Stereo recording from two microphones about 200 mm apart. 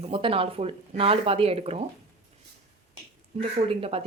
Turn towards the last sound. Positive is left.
turn(degrees=-30)  # may be behind; listen again after turning